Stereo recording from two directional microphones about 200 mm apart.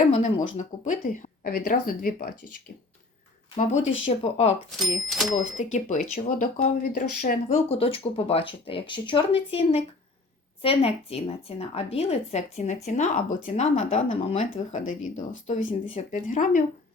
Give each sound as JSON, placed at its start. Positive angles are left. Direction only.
{"t": 0.1, "sound": "a sound", "side_deg": 30}
{"t": 0.5, "sound": "speech", "side_deg": 40}
{"t": 3.5, "sound": "a woman's voice", "side_deg": 35}
{"t": 4.8, "sound": "speech", "side_deg": 0}
{"t": 5.7, "sound": "a woman's voice", "side_deg": 35}
{"t": 7.7, "sound": "a woman's voice", "side_deg": 30}